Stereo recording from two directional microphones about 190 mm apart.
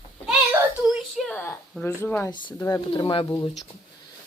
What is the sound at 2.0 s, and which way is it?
Speech, 10° left (ahead or behind).